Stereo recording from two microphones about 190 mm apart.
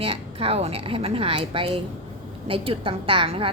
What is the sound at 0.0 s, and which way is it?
A woman's voice, 30° right (ahead or behind).